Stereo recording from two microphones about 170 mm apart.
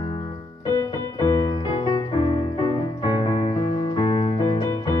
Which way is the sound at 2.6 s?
30° left (ahead or behind).